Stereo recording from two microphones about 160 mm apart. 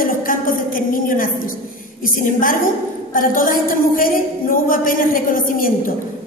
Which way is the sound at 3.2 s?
60° left (ahead or behind).